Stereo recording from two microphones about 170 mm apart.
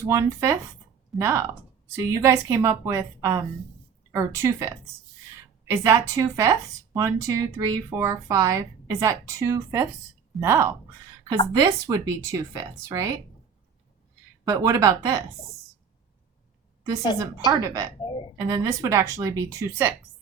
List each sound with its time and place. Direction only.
0.0 s speech: 15° right (ahead or behind)
14.4 s speech: 20° right (ahead or behind)
17.2 s speech: 20° right (ahead or behind)
18.0 s speech: 30° left (ahead or behind)
18.3 s speech: 20° right (ahead or behind)